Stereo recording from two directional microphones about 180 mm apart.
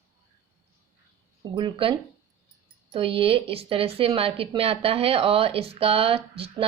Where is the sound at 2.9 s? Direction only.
30° right (ahead or behind).